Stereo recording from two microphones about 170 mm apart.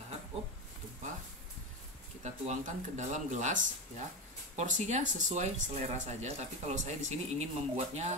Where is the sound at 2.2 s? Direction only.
45° right (ahead or behind).